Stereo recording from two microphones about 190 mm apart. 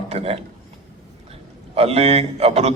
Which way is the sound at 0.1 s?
30° right (ahead or behind).